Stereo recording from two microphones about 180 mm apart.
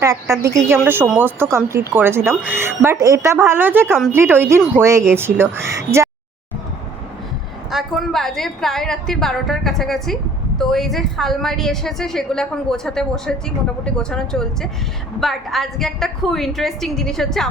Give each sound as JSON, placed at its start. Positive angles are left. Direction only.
{"t": 0.0, "sound": "speech", "side_deg": -15}
{"t": 7.7, "sound": "a woman's voice", "side_deg": 0}